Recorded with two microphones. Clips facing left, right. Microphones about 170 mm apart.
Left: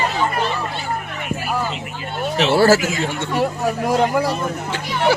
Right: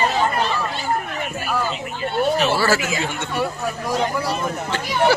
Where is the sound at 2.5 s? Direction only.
45° left (ahead or behind).